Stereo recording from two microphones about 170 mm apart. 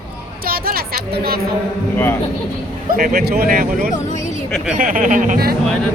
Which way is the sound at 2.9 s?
60° right (ahead or behind).